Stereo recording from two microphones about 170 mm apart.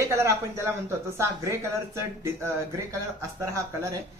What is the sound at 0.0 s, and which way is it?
Speech, 15° right (ahead or behind).